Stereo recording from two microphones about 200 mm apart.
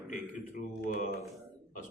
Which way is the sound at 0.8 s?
55° left (ahead or behind).